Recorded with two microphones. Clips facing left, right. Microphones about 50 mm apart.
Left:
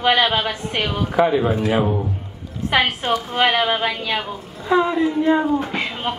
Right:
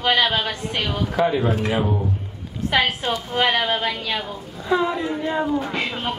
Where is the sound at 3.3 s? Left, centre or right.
Centre.